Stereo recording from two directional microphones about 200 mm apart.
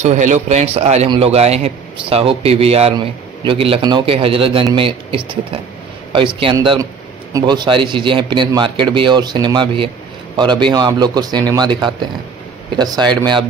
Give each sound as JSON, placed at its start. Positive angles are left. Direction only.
{"t": 0.0, "sound": "a man's voice", "side_deg": -35}